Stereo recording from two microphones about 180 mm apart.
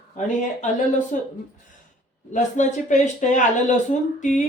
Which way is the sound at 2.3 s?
45° left (ahead or behind).